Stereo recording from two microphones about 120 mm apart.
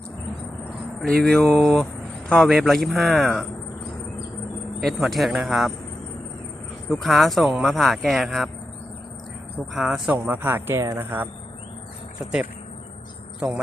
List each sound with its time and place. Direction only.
1.0 s speech: 5° left (ahead or behind)
4.8 s speech: centre (ahead or behind)
6.9 s speech: centre (ahead or behind)
9.7 s speech: 5° right (ahead or behind)
10.2 s speech: 15° right (ahead or behind)
12.2 s speech: 5° right (ahead or behind)